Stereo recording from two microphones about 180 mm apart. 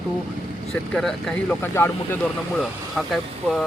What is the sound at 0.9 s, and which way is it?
Speech, 5° left (ahead or behind).